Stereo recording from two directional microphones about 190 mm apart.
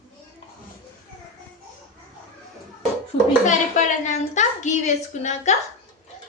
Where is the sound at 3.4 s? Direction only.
40° left (ahead or behind).